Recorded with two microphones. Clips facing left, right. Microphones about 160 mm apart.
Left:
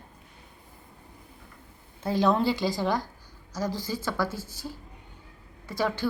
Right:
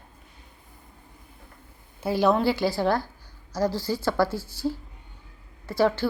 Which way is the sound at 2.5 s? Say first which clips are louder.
Right 3 dB; 20° left (ahead or behind).